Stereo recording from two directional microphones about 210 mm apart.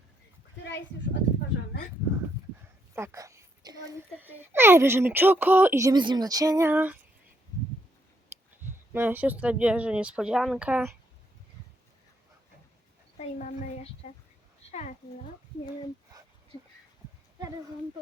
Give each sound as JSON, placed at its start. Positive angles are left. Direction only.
{"t": 0.6, "sound": "a sound", "side_deg": 55}
{"t": 2.9, "sound": "a child's voice", "side_deg": -10}
{"t": 8.9, "sound": "speech", "side_deg": -10}
{"t": 14.7, "sound": "a woman's voice", "side_deg": 30}